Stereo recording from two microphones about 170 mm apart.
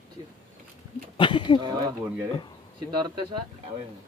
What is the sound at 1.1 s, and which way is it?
Speech, 30° left (ahead or behind).